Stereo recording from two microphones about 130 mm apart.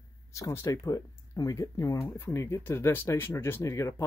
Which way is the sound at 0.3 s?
25° left (ahead or behind).